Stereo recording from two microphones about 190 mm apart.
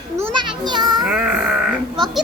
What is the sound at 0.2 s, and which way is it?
Children playing, 25° right (ahead or behind).